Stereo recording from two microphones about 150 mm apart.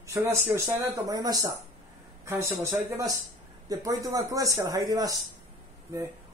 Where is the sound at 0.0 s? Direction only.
20° right (ahead or behind).